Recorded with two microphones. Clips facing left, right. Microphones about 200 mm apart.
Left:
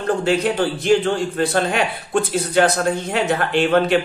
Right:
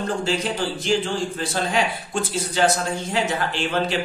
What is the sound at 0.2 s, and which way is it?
A man's voice, 60° left (ahead or behind).